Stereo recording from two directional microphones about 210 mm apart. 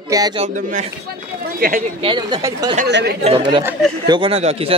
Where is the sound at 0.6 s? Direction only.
35° right (ahead or behind).